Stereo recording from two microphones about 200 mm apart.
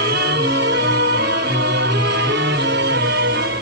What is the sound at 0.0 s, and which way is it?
Music, 55° right (ahead or behind).